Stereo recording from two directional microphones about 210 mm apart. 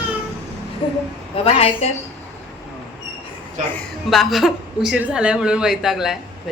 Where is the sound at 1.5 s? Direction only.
30° left (ahead or behind).